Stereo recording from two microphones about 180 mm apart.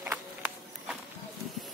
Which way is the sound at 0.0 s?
10° right (ahead or behind).